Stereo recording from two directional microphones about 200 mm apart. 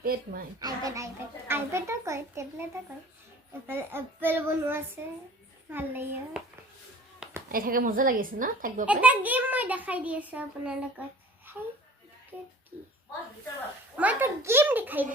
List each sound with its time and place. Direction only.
0.0 s a woman's voice: 45° right (ahead or behind)
0.6 s a child's voice: 15° right (ahead or behind)
3.7 s a child's voice: 10° right (ahead or behind)
7.5 s a woman's voice: 45° right (ahead or behind)
8.9 s a child's voice: 5° right (ahead or behind)
13.9 s a child's voice: 5° right (ahead or behind)